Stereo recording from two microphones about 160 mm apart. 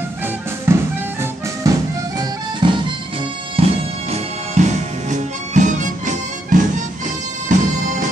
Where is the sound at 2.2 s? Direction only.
30° right (ahead or behind); by 7.7 s 55° right (ahead or behind).